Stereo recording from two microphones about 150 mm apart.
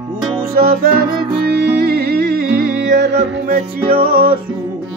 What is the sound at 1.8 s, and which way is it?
Music, 90° right.